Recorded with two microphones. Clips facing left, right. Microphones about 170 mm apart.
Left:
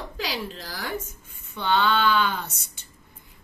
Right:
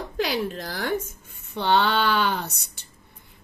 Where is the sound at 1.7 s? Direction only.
55° right (ahead or behind).